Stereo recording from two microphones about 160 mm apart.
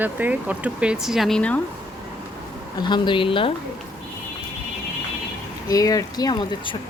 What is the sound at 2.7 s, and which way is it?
Speech, 30° left (ahead or behind).